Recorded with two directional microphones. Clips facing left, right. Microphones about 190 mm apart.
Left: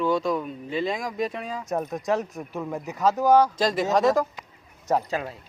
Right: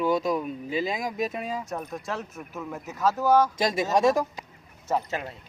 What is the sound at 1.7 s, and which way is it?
Speech, 40° left (ahead or behind).